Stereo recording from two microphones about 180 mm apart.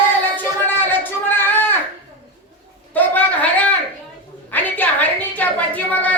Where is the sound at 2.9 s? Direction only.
10° left (ahead or behind).